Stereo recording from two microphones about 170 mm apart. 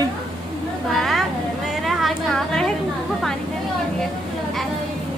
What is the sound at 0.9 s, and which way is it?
A woman's voice, centre (ahead or behind).